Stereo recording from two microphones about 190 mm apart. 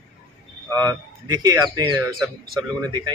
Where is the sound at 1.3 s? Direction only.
20° right (ahead or behind).